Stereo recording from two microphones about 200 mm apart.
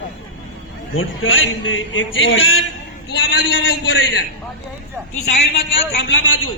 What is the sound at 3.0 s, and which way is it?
A man's voice, 65° left (ahead or behind).